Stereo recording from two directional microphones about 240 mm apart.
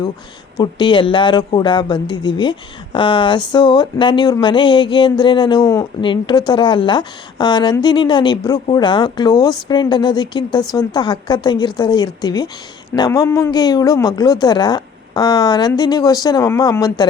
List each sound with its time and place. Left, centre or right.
0.5 s a woman's voice: centre